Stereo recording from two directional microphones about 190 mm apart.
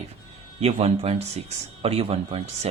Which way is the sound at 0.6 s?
30° right (ahead or behind).